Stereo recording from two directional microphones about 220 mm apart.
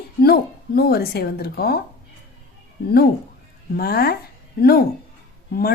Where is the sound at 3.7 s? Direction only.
45° left (ahead or behind).